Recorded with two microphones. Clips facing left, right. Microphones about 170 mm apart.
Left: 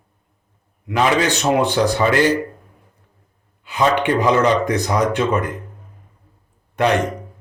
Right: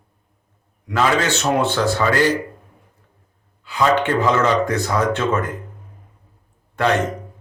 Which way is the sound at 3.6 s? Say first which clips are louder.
Even; 20° left (ahead or behind).